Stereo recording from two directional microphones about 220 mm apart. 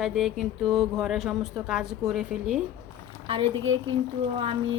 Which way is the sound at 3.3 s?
25° right (ahead or behind).